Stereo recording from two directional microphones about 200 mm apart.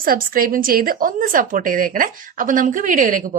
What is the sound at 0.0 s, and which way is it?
A woman's voice, 45° right (ahead or behind).